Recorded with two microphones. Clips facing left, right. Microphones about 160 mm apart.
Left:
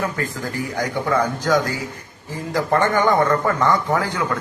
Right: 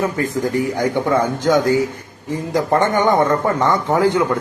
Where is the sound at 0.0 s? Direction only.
20° right (ahead or behind).